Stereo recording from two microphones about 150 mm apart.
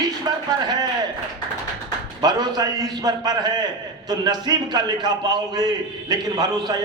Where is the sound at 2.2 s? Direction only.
25° right (ahead or behind).